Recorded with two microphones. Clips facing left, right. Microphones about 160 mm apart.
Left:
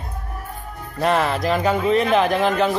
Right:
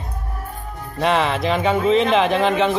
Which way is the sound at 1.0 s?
Centre (ahead or behind).